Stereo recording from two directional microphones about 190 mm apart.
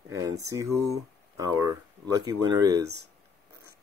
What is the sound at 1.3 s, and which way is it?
Speech, 20° right (ahead or behind).